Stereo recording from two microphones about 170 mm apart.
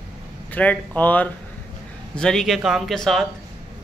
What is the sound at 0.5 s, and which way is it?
Speech, 10° left (ahead or behind).